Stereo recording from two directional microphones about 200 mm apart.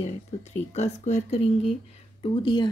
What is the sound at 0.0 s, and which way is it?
Speech, 35° left (ahead or behind).